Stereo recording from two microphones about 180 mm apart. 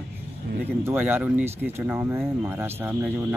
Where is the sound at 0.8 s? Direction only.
10° right (ahead or behind).